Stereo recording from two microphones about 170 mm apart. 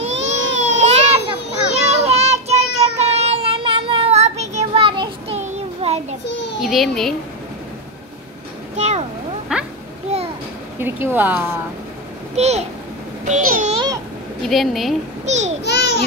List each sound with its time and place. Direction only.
0.0 s baby cry: 40° right (ahead or behind)
5.4 s child singing: 40° right (ahead or behind)
6.6 s a child's voice: centre (ahead or behind)
8.7 s a sound: 40° right (ahead or behind)
9.5 s a sound: 5° right (ahead or behind)
10.1 s a sound: 40° right (ahead or behind)
10.8 s a woman's voice: 10° right (ahead or behind)
12.4 s a child's voice: 40° right (ahead or behind)
14.5 s a child's voice: centre (ahead or behind)
15.2 s a child's voice: 40° right (ahead or behind)
15.6 s babbling: 80° left